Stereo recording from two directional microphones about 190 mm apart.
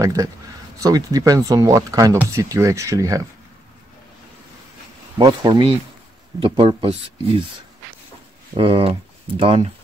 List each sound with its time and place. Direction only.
0.0 s speech: 20° right (ahead or behind)
5.1 s speech: 20° right (ahead or behind)
8.5 s speech: 30° right (ahead or behind)